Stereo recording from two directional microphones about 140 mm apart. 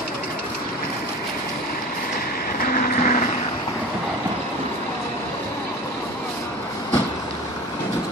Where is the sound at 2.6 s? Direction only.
90° left; by 3.3 s 65° left (ahead or behind).